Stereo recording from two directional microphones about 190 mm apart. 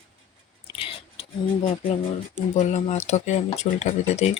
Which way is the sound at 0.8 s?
30° left (ahead or behind).